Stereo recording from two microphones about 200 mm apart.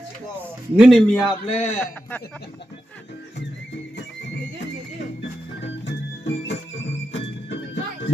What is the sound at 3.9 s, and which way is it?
Neigh, 60° left (ahead or behind).